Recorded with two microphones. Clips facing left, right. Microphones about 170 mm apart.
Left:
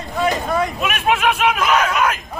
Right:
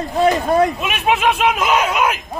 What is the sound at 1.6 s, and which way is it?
Speech, 20° right (ahead or behind).